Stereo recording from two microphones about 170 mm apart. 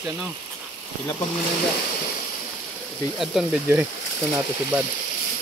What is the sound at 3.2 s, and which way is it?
Speech, centre (ahead or behind).